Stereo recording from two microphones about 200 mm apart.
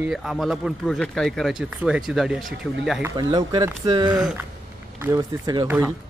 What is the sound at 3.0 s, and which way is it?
Speech, 20° right (ahead or behind).